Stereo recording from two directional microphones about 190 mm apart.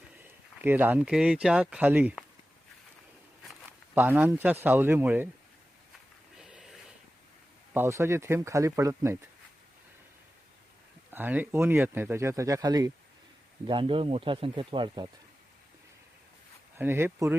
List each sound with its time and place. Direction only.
0.6 s speech: 10° right (ahead or behind)
3.7 s speech: 10° right (ahead or behind)
6.3 s a sound: centre (ahead or behind)
7.7 s speech: 15° right (ahead or behind)
11.1 s speech: 10° right (ahead or behind)
16.7 s speech: 10° right (ahead or behind)